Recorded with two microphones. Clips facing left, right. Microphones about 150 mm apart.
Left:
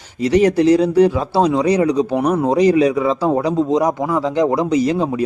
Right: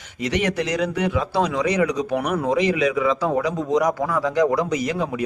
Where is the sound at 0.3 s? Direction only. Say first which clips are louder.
Left 10 dB; 35° left (ahead or behind).